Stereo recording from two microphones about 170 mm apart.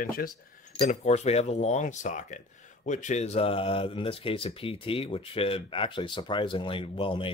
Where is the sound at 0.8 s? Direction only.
40° left (ahead or behind).